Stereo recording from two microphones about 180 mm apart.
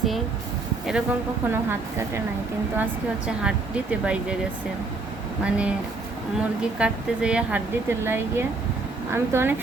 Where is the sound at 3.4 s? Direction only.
5° right (ahead or behind).